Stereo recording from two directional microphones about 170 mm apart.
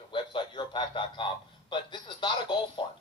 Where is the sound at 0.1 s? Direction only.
30° left (ahead or behind).